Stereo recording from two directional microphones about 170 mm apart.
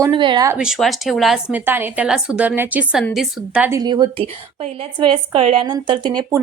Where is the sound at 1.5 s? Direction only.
10° right (ahead or behind).